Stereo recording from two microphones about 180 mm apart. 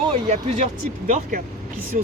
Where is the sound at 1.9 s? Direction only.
50° right (ahead or behind).